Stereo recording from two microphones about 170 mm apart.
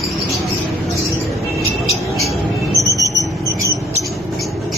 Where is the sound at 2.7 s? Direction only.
20° left (ahead or behind).